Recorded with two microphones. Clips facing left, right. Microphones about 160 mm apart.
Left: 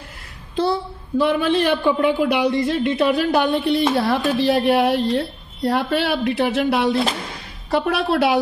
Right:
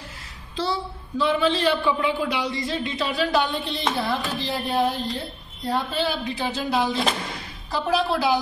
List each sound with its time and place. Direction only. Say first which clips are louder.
0.6 s a woman's voice: left 6 dB; 55° left (ahead or behind)